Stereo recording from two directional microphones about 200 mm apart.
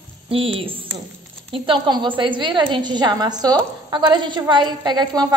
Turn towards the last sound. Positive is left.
turn(degrees=-20)  # may be behind; listen again after turning